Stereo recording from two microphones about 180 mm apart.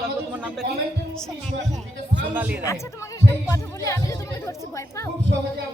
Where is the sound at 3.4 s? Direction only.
15° left (ahead or behind).